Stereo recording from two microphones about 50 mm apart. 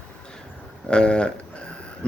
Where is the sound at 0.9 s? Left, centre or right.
Centre.